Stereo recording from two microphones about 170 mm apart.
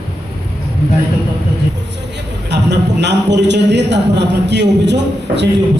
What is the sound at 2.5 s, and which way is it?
Speech, 90° right.